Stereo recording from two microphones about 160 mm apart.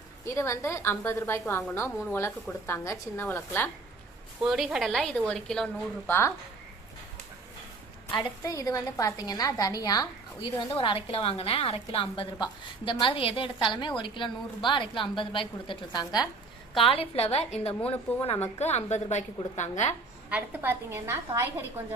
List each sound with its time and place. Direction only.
0.3 s a woman's voice: 20° left (ahead or behind)
4.4 s a woman's voice: centre (ahead or behind)
6.1 s a woman's voice: 15° left (ahead or behind)
8.1 s a woman's voice: 20° left (ahead or behind)
16.7 s a woman's voice: 35° left (ahead or behind)
20.3 s a woman's voice: 10° right (ahead or behind)